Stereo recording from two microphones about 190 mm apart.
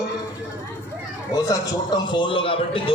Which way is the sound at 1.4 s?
20° left (ahead or behind).